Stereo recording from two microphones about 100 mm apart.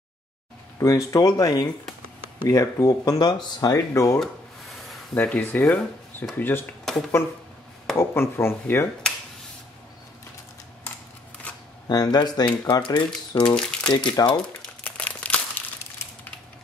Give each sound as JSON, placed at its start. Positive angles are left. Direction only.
{"t": 0.7, "sound": "speech", "side_deg": 30}
{"t": 3.2, "sound": "speech", "side_deg": 45}
{"t": 3.7, "sound": "speech", "side_deg": 35}
{"t": 4.2, "sound": "a sound", "side_deg": 0}
{"t": 5.1, "sound": "speech", "side_deg": 10}
{"t": 6.8, "sound": "a sound", "side_deg": 5}
{"t": 8.0, "sound": "speech", "side_deg": 25}
{"t": 11.9, "sound": "speech", "side_deg": 40}
{"t": 13.4, "sound": "speech", "side_deg": 10}
{"t": 13.9, "sound": "speech", "side_deg": 45}
{"t": 14.4, "sound": "crumpling", "side_deg": 10}